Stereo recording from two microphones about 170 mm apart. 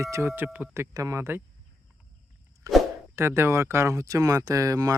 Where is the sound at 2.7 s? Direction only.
20° right (ahead or behind).